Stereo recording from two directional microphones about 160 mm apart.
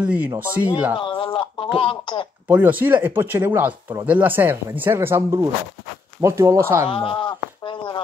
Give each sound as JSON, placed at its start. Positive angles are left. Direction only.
{"t": 0.0, "sound": "speech", "side_deg": -10}
{"t": 0.9, "sound": "speech", "side_deg": 30}
{"t": 2.4, "sound": "speech", "side_deg": -10}
{"t": 6.9, "sound": "speech", "side_deg": 35}